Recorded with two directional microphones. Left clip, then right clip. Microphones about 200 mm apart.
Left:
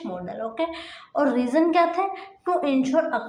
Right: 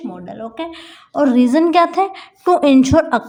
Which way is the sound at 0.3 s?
50° right (ahead or behind).